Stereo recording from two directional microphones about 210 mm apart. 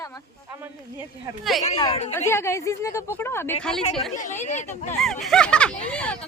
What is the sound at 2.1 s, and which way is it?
A woman's voice, 10° left (ahead or behind).